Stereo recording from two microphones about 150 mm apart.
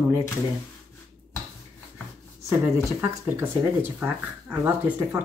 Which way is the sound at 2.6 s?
15° right (ahead or behind).